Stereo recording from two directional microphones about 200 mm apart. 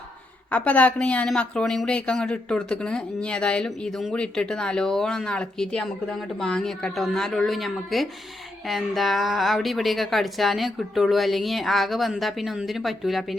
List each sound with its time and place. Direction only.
0.5 s speech: 5° left (ahead or behind)